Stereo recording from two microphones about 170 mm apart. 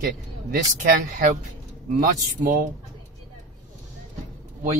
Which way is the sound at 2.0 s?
55° right (ahead or behind).